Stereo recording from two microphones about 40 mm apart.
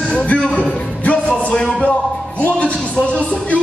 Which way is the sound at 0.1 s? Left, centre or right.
Left.